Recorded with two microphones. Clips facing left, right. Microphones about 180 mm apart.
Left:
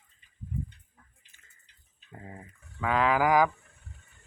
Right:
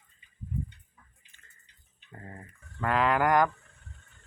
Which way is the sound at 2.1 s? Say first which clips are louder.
Left 1 dB; 5° left (ahead or behind).